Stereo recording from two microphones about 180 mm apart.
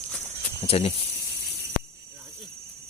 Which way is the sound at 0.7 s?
35° left (ahead or behind).